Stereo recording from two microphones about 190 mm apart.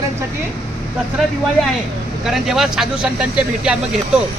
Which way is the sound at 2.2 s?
Centre (ahead or behind).